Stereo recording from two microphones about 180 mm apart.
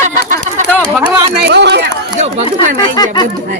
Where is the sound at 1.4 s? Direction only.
70° right (ahead or behind).